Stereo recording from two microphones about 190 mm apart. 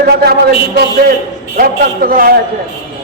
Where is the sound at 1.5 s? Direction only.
50° right (ahead or behind).